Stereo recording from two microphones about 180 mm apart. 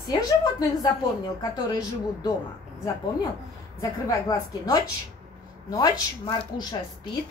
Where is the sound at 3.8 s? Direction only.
20° left (ahead or behind).